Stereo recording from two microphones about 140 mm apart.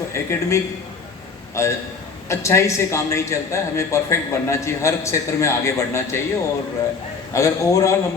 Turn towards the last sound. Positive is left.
turn(degrees=20)  # may be behind; listen again after turning